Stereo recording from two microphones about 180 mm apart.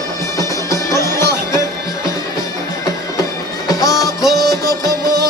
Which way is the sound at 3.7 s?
20° left (ahead or behind).